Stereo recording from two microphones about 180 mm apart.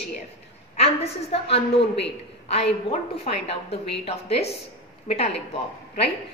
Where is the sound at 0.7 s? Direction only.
35° left (ahead or behind).